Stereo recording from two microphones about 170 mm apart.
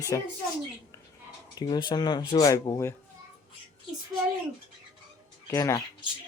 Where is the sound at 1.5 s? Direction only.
25° left (ahead or behind).